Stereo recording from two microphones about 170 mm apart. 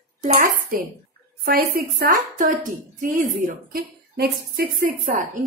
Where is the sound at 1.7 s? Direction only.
60° right (ahead or behind).